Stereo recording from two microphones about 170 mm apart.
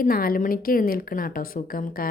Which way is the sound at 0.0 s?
60° left (ahead or behind).